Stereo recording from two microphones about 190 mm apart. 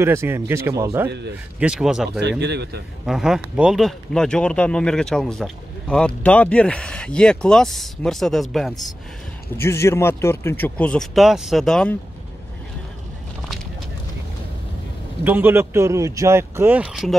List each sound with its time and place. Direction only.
0.0 s a man's voice: 15° right (ahead or behind)
1.0 s a man's voice: 65° right (ahead or behind)
1.6 s speech: 5° right (ahead or behind)
2.1 s a man's voice: 65° right (ahead or behind)
3.1 s speech: centre (ahead or behind)
9.6 s speech: 15° left (ahead or behind)
15.2 s a man's voice: 10° right (ahead or behind)